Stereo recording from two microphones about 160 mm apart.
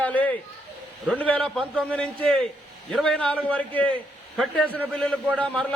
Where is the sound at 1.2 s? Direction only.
5° left (ahead or behind).